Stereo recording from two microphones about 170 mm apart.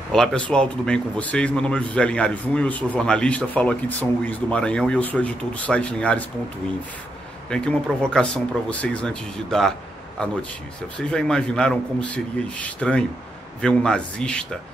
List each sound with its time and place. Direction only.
0.1 s a man's voice: 5° left (ahead or behind)
7.4 s speech: 5° left (ahead or behind)